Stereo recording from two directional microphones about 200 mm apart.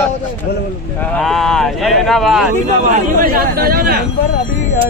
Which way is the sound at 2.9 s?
45° right (ahead or behind).